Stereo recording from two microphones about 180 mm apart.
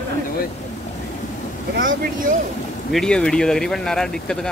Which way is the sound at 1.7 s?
50° right (ahead or behind).